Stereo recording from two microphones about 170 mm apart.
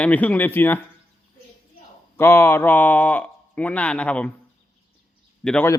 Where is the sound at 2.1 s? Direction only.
15° left (ahead or behind).